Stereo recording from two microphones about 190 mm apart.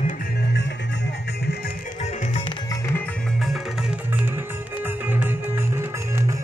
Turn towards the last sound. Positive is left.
turn(degrees=-15)  # may be behind; listen again after turning